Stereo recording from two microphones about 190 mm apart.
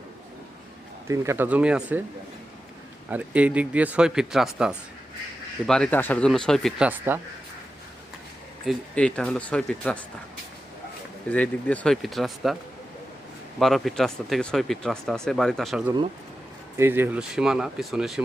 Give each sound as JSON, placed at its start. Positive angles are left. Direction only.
{"t": 1.0, "sound": "speech", "side_deg": -15}
{"t": 3.1, "sound": "speech", "side_deg": -10}
{"t": 8.6, "sound": "speech", "side_deg": 5}
{"t": 11.3, "sound": "speech", "side_deg": 5}
{"t": 13.6, "sound": "speech", "side_deg": 0}
{"t": 16.7, "sound": "speech", "side_deg": -10}